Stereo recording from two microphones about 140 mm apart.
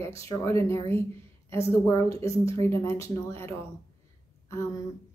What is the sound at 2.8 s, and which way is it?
Speech, 20° left (ahead or behind).